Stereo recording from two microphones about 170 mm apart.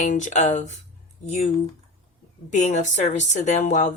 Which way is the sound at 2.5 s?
45° left (ahead or behind).